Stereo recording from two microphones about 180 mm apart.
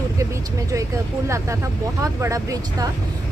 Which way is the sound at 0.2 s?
15° right (ahead or behind).